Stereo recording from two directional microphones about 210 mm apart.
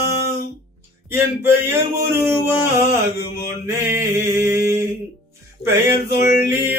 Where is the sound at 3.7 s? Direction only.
10° right (ahead or behind).